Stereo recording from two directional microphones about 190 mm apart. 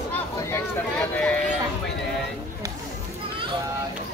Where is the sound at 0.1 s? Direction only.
10° left (ahead or behind).